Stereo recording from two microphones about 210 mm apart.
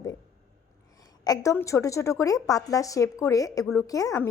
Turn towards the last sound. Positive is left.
turn(degrees=15)  # may be behind; listen again after turning